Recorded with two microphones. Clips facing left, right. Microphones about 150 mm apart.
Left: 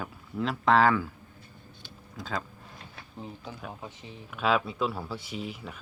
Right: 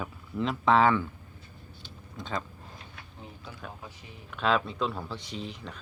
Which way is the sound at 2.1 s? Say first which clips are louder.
Even; centre (ahead or behind).